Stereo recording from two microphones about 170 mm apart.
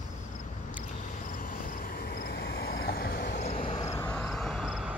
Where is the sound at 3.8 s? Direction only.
20° left (ahead or behind).